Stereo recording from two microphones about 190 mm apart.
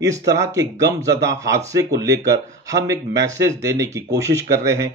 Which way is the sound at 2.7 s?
15° right (ahead or behind).